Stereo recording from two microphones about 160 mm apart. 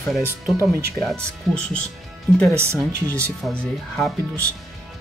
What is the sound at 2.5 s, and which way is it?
Speech, 15° right (ahead or behind).